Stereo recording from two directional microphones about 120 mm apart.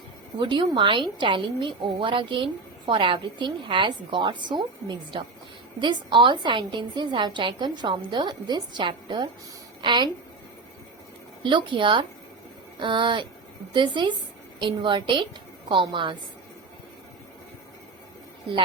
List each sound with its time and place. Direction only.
0.3 s a woman's voice: 40° right (ahead or behind)
11.4 s a woman's voice: 45° right (ahead or behind)